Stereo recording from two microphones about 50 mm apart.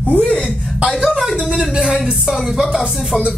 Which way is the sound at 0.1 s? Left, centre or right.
Left.